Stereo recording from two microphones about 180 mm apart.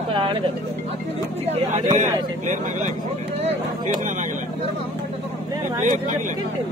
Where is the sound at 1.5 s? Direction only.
45° right (ahead or behind).